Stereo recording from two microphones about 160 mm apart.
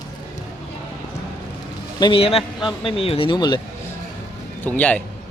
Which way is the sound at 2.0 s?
35° left (ahead or behind).